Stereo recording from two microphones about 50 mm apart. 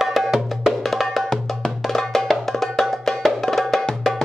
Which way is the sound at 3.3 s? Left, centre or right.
Centre.